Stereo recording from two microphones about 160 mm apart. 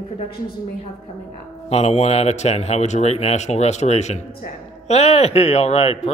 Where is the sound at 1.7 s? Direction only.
40° left (ahead or behind).